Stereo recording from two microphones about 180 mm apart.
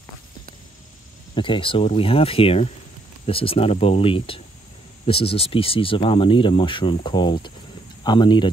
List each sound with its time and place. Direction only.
1.3 s speech: 25° left (ahead or behind)